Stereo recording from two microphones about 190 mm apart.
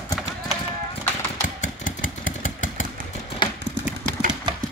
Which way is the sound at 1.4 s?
40° left (ahead or behind).